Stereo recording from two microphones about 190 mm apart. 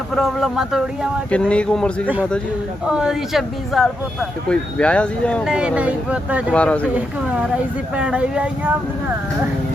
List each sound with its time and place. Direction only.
0.1 s speech: centre (ahead or behind)
5.5 s speech: 5° right (ahead or behind)
6.5 s speech: 5° left (ahead or behind)
6.9 s speech: 5° right (ahead or behind)